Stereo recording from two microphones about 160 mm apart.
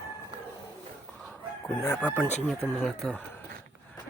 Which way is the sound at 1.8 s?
10° left (ahead or behind).